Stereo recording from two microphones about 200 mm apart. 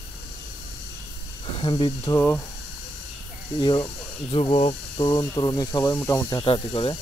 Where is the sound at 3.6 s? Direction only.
20° left (ahead or behind).